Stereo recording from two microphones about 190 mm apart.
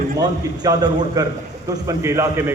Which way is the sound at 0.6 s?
20° right (ahead or behind).